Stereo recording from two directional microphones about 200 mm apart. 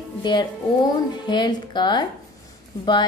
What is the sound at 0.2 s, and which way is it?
Speech, 20° left (ahead or behind).